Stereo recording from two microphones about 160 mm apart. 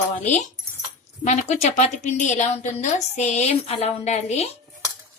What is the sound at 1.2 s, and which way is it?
A woman's voice, 45° left (ahead or behind).